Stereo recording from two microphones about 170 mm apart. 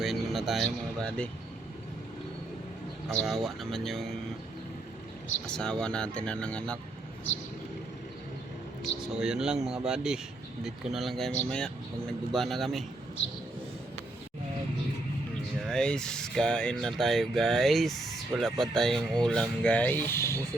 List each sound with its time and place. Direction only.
0.0 s speech: centre (ahead or behind)
3.2 s speech: centre (ahead or behind)
5.5 s speech: 5° left (ahead or behind)
8.8 s speech: 5° right (ahead or behind)
15.6 s speech: 5° left (ahead or behind)